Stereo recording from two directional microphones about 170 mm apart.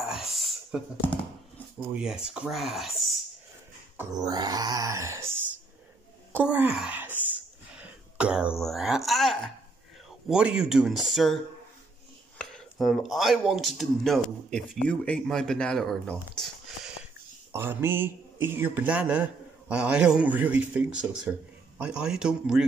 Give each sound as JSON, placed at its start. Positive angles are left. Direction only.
{"t": 0.0, "sound": "a sound", "side_deg": 0}
{"t": 1.8, "sound": "speech", "side_deg": -5}
{"t": 4.1, "sound": "a sound", "side_deg": -25}
{"t": 6.3, "sound": "speech", "side_deg": -10}
{"t": 12.4, "sound": "speech", "side_deg": 5}
{"t": 17.5, "sound": "a man's voice", "side_deg": -15}